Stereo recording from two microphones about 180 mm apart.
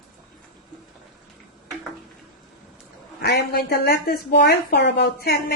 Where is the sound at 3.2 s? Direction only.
60° left (ahead or behind).